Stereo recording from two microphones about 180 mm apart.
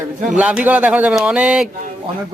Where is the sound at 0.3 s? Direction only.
5° right (ahead or behind).